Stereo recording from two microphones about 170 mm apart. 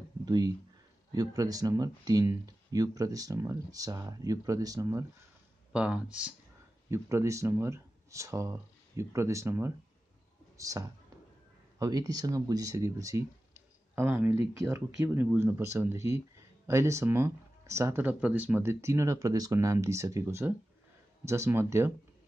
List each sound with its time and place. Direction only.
0.2 s speech: 25° right (ahead or behind)
5.7 s speech: 5° right (ahead or behind)